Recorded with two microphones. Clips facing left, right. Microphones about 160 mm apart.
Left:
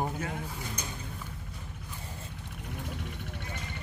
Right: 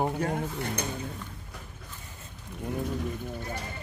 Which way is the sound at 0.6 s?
65° right (ahead or behind).